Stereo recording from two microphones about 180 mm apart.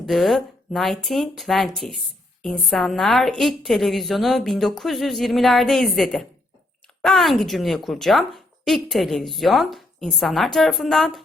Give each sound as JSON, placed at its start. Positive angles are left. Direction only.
{"t": 0.0, "sound": "a woman's voice", "side_deg": 0}